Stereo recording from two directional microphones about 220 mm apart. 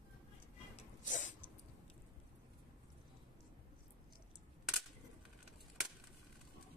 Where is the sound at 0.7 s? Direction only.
35° left (ahead or behind).